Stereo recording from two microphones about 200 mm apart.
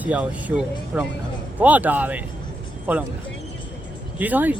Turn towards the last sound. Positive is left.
turn(degrees=-10)  # may be behind; listen again after turning